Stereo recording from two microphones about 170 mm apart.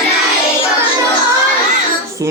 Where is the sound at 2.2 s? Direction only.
20° right (ahead or behind).